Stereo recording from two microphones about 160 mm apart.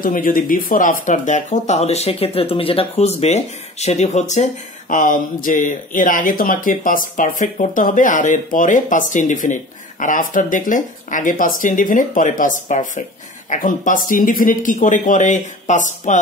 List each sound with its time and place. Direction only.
0.0 s speech: 60° left (ahead or behind)